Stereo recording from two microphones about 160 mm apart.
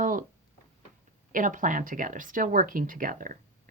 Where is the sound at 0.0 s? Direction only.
55° right (ahead or behind).